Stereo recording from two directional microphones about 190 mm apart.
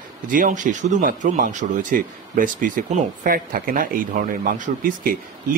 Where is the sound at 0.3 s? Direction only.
40° right (ahead or behind).